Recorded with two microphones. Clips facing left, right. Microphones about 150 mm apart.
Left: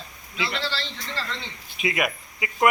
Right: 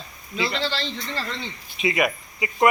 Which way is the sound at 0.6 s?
20° right (ahead or behind).